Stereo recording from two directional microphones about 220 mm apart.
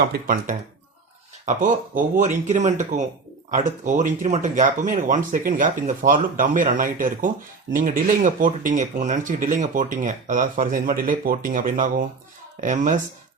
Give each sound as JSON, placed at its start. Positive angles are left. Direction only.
{"t": 0.1, "sound": "speech", "side_deg": -40}